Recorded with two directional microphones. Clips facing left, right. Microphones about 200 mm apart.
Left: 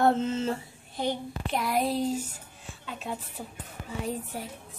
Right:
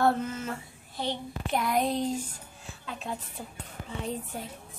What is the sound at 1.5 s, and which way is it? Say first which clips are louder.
Speech: even; centre (ahead or behind).